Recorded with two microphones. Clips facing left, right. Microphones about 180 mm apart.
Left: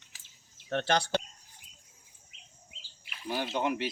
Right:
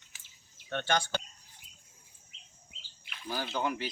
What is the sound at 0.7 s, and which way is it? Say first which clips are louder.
Speech: left 3 dB; 35° left (ahead or behind).